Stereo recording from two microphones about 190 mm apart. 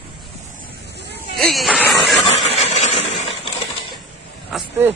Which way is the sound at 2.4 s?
35° left (ahead or behind).